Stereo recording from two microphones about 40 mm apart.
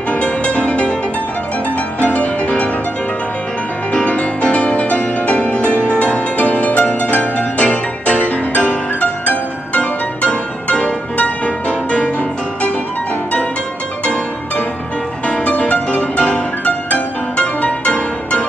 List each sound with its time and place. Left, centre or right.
0.1 s music: left
2.0 s music: left
3.9 s music: left
15.2 s music: left